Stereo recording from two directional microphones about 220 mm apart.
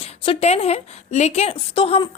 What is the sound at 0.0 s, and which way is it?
A woman's voice, 25° left (ahead or behind).